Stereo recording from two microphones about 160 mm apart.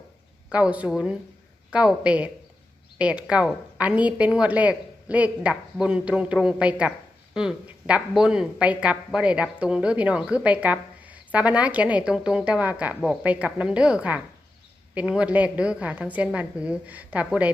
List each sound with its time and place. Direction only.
0.5 s speech: 10° right (ahead or behind)